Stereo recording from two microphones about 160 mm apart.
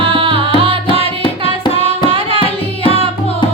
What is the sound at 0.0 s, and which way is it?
Music, 35° right (ahead or behind).